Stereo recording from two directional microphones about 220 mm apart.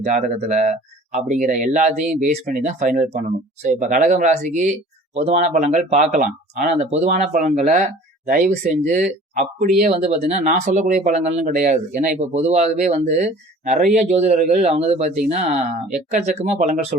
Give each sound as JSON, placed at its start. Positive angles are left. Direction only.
{"t": 0.1, "sound": "speech", "side_deg": -30}